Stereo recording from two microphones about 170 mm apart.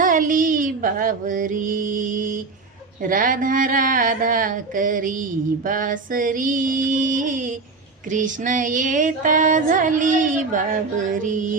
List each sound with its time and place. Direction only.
0.0 s female singing: 50° right (ahead or behind)